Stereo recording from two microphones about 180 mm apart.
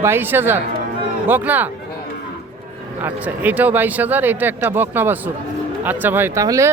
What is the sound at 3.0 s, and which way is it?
A man's voice, 10° right (ahead or behind).